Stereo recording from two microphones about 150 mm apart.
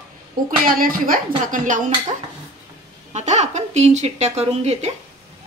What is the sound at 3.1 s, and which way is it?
Speech, 50° right (ahead or behind).